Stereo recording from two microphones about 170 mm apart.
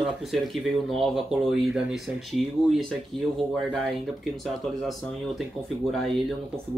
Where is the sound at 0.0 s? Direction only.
Centre (ahead or behind).